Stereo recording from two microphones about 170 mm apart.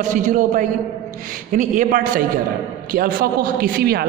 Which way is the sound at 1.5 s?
50° right (ahead or behind).